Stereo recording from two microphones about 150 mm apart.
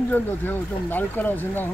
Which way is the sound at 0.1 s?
10° left (ahead or behind).